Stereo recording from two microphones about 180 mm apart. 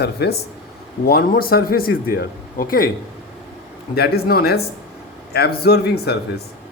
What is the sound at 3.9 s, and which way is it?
Speech, 60° left (ahead or behind).